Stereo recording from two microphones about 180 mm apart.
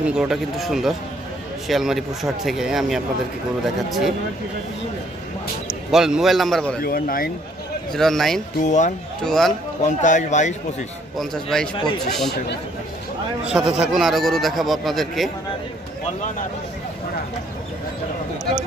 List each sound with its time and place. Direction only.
0.0 s speech: 5° right (ahead or behind)
5.9 s speech: 5° right (ahead or behind)
6.8 s speech: 55° left (ahead or behind)
7.9 s speech: centre (ahead or behind)
8.6 s speech: 40° left (ahead or behind)
9.2 s speech: centre (ahead or behind)
9.8 s speech: 45° left (ahead or behind)
11.1 s speech: centre (ahead or behind)
13.5 s speech: 5° right (ahead or behind)